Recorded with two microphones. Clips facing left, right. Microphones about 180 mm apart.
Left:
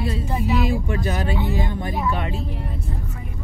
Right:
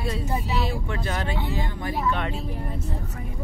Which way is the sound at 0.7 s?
15° left (ahead or behind).